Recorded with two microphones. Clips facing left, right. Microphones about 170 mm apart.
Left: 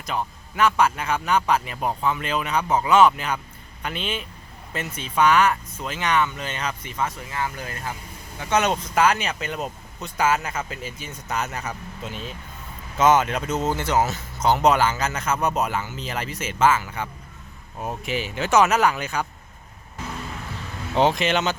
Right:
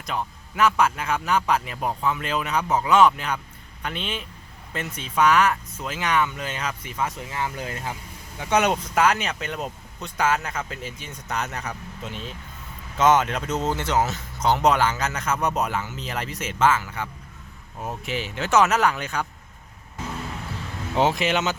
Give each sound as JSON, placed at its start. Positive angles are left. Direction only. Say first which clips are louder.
{"t": 0.0, "sound": "speech", "louder": "left 1 dB", "side_deg": 0}
{"t": 7.2, "sound": "speech", "louder": "even", "side_deg": -20}
{"t": 9.0, "sound": "speech", "louder": "left 2 dB", "side_deg": 0}
{"t": 21.0, "sound": "speech", "louder": "left 1 dB", "side_deg": -5}